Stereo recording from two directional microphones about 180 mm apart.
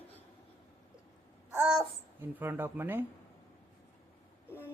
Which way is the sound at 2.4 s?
10° right (ahead or behind).